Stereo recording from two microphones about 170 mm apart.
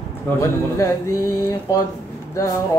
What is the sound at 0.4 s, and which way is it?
Speech, 15° left (ahead or behind).